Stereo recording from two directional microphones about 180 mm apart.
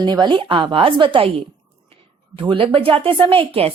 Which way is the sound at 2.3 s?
30° right (ahead or behind).